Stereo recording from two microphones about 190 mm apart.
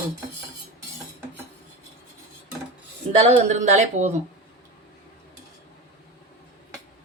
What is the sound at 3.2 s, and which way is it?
Speech, 35° right (ahead or behind).